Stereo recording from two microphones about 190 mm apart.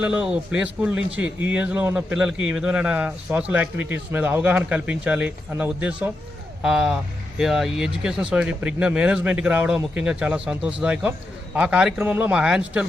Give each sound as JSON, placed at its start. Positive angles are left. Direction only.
{"t": 0.0, "sound": "a man's voice", "side_deg": -5}